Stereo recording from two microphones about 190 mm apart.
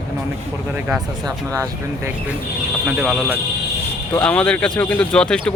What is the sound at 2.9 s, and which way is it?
Speech, 5° right (ahead or behind).